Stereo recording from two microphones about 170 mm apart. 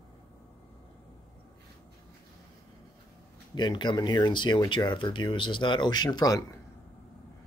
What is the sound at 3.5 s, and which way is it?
Speech, 25° left (ahead or behind).